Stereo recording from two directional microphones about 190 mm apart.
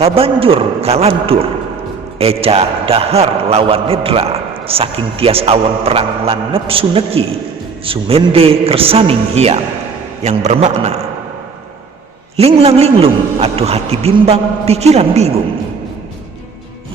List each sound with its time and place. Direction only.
0.0 s a man's voice: 30° right (ahead or behind)
12.4 s a man's voice: 30° right (ahead or behind)